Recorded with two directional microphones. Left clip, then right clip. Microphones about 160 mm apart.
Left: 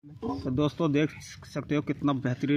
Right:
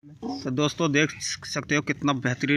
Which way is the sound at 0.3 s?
Centre (ahead or behind).